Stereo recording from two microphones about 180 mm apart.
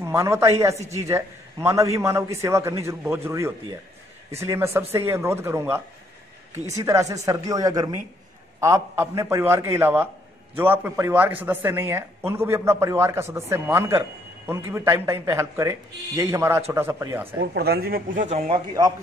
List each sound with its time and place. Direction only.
0.0 s a man's voice: 15° right (ahead or behind)
17.4 s speech: 65° right (ahead or behind); by 18.4 s 45° right (ahead or behind)
18.5 s speech: 20° right (ahead or behind)